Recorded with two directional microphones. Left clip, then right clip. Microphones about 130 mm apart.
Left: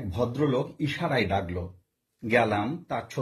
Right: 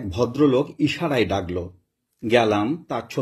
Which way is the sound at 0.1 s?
35° right (ahead or behind).